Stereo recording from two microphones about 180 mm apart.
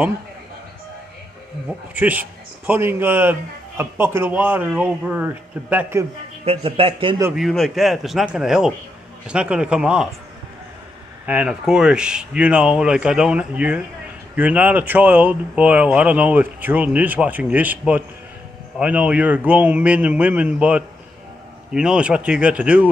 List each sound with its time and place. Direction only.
2.0 s a man's voice: 10° right (ahead or behind)
6.4 s speech: 30° right (ahead or behind)
7.3 s speech: centre (ahead or behind)
11.2 s a man's voice: 5° right (ahead or behind)